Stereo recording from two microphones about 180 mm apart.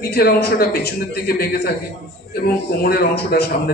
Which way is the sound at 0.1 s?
60° left (ahead or behind).